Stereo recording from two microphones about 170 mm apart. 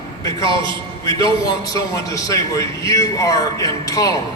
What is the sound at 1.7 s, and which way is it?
A man's voice, 20° left (ahead or behind).